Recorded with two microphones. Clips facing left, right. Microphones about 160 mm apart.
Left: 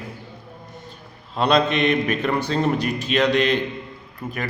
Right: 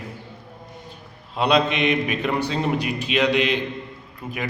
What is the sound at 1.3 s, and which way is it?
Speech, 15° right (ahead or behind).